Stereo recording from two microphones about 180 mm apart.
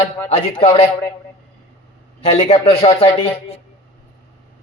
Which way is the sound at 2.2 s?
40° left (ahead or behind).